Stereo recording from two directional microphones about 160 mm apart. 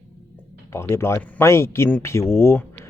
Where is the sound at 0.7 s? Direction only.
15° left (ahead or behind).